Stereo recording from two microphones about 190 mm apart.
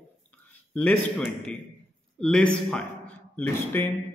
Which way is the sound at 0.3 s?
5° left (ahead or behind).